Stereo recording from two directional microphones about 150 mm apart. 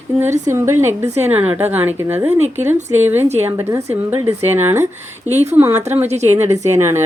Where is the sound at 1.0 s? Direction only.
45° right (ahead or behind).